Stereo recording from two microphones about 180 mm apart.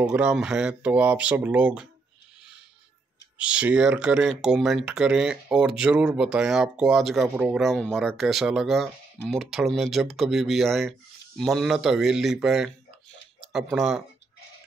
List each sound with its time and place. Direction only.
0.0 s speech: 5° right (ahead or behind)
3.3 s speech: 5° right (ahead or behind)